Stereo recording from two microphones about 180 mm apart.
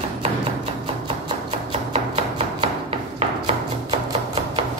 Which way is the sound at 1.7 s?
35° right (ahead or behind).